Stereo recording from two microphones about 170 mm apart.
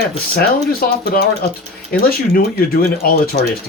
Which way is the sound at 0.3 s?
60° left (ahead or behind).